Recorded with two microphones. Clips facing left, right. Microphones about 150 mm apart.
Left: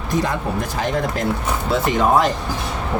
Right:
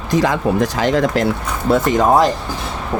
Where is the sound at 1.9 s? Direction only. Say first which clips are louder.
Right 2 dB; 35° right (ahead or behind).